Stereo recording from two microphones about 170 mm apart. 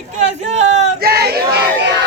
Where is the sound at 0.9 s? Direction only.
65° right (ahead or behind).